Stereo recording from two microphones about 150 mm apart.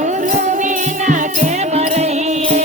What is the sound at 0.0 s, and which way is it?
Music, 55° right (ahead or behind).